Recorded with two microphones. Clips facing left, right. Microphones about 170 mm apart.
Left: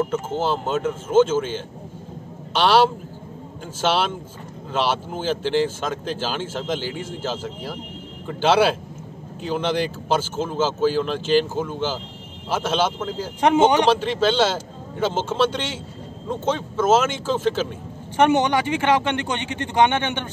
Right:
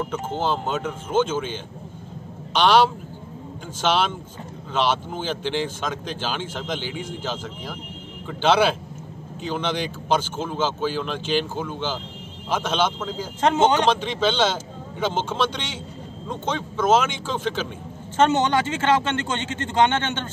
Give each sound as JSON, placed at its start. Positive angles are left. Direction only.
{"t": 0.0, "sound": "speech", "side_deg": 5}
{"t": 18.1, "sound": "a man's voice", "side_deg": 15}